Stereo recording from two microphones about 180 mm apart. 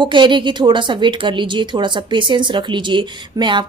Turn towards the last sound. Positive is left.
turn(degrees=-25)  # may be behind; listen again after turning